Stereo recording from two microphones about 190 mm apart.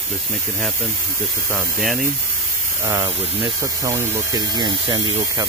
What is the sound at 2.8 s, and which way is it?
Speech, 20° right (ahead or behind).